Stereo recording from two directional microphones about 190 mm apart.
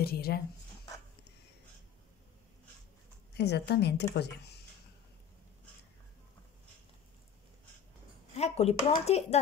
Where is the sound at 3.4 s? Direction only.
60° left (ahead or behind).